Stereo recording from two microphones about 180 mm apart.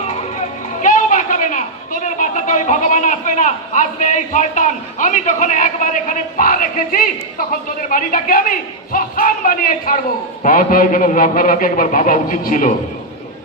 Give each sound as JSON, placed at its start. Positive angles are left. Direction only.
{"t": 0.8, "sound": "a woman's voice", "side_deg": 45}